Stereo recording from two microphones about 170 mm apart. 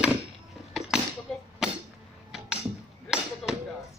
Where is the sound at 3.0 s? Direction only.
5° right (ahead or behind).